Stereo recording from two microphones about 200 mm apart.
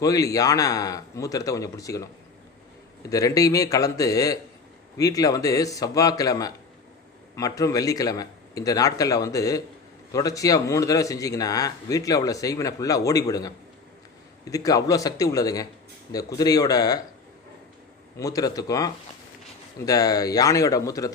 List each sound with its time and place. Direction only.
0.0 s speech: 15° left (ahead or behind)
18.2 s speech: 15° left (ahead or behind)